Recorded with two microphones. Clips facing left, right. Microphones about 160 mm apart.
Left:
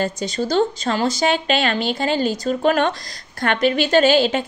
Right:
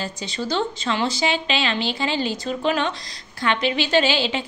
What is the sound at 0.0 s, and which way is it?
A woman's voice, 45° left (ahead or behind).